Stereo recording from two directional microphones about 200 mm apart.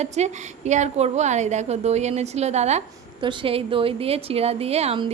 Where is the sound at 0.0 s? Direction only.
35° right (ahead or behind).